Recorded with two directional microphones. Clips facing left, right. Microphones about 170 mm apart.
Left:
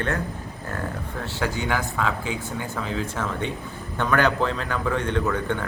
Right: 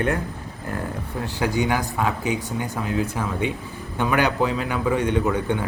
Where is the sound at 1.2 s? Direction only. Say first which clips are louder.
Right 5 dB; 15° right (ahead or behind).